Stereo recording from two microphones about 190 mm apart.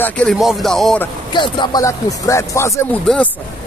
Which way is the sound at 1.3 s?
25° left (ahead or behind).